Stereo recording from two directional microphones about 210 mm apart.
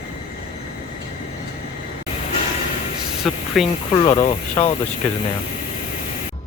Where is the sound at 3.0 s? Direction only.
Centre (ahead or behind).